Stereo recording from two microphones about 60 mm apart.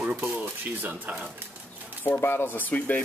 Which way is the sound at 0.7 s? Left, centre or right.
Right.